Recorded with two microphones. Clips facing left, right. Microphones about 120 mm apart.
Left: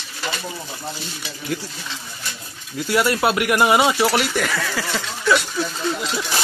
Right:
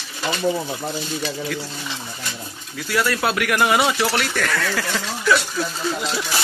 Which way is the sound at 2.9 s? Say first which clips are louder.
Left 2 dB; 20° left (ahead or behind).